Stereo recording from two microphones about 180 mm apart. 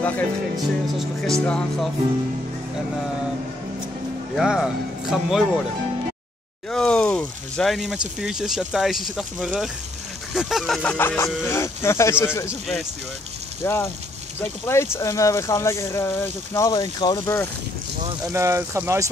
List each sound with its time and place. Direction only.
0.0 s speech: 10° left (ahead or behind)
4.4 s speech: 5° right (ahead or behind)
6.7 s speech: 5° left (ahead or behind)
12.4 s speech: centre (ahead or behind)
13.7 s speech: 15° left (ahead or behind)
18.2 s speech: 15° right (ahead or behind)